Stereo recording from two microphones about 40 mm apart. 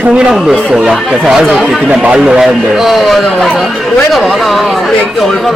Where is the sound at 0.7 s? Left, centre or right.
Centre.